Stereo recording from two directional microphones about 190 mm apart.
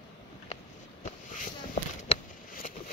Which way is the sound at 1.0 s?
40° left (ahead or behind).